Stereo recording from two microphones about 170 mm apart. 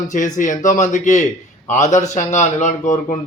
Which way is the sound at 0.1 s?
50° left (ahead or behind).